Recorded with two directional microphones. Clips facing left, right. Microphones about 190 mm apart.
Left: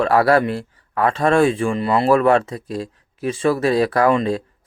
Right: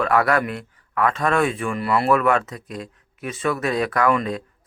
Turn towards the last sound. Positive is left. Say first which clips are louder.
# left 4 dB
turn(degrees=30)  # may be behind; listen again after turning